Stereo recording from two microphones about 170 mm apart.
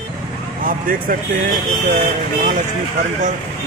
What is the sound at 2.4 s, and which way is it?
Speech, 50° right (ahead or behind).